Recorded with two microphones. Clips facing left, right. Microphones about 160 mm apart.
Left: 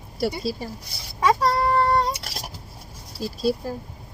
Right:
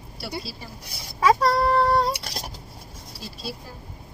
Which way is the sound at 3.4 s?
45° left (ahead or behind).